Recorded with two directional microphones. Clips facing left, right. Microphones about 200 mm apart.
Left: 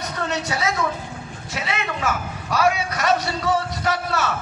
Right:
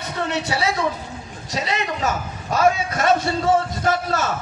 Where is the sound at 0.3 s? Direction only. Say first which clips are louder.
Right 2 dB; 30° right (ahead or behind).